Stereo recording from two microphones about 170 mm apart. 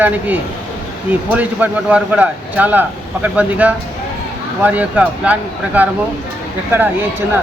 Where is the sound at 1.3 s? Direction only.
10° right (ahead or behind).